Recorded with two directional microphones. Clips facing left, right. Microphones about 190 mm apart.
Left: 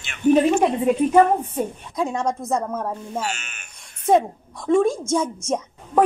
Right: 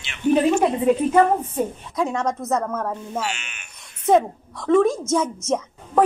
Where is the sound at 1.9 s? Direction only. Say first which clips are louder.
Even; 10° left (ahead or behind).